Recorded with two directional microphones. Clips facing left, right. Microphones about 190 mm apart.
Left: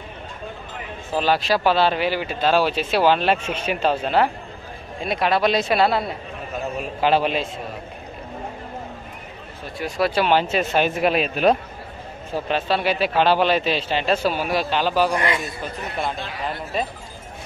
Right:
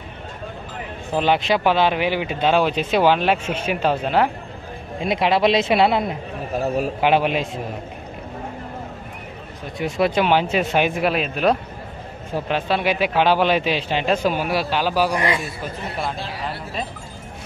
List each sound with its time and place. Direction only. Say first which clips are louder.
1.1 s a man's voice: right 1 dB; 20° right (ahead or behind)
2.4 s speech: right 1 dB; 5° left (ahead or behind)
3.1 s a man's voice: right 1 dB; 10° right (ahead or behind)
5.0 s speech: right 2 dB; 20° right (ahead or behind)
6.5 s a man's voice: right 6 dB; 35° right (ahead or behind)
7.0 s a man's voice: left 1 dB; 15° right (ahead or behind)
9.8 s a man's voice: right 2 dB; 20° right (ahead or behind); by 11.5 s centre (ahead or behind)
12.4 s a man's voice: even; 10° right (ahead or behind)
15.1 s speech: right 1 dB; 25° right (ahead or behind)